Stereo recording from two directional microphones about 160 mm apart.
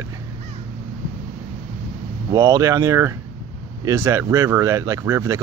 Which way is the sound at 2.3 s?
20° right (ahead or behind).